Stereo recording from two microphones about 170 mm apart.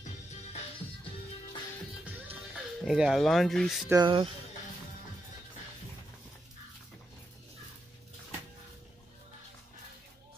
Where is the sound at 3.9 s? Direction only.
25° right (ahead or behind).